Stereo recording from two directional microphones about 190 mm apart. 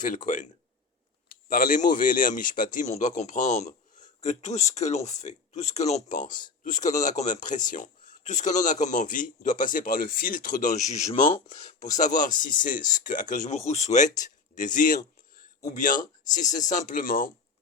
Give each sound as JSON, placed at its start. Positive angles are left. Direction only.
{"t": 0.0, "sound": "a man's voice", "side_deg": 45}